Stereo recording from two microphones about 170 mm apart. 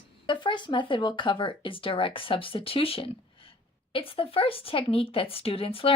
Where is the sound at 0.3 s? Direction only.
30° left (ahead or behind).